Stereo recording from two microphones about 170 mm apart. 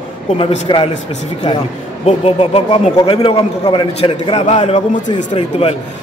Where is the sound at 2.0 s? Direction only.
35° left (ahead or behind).